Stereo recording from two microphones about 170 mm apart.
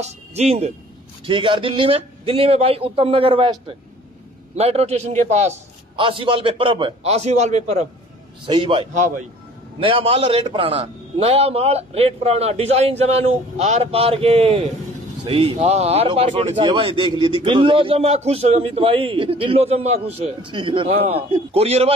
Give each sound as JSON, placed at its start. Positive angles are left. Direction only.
{"t": 0.0, "sound": "a man's voice", "side_deg": -40}
{"t": 5.9, "sound": "a man's voice", "side_deg": -30}
{"t": 8.5, "sound": "a man's voice", "side_deg": -30}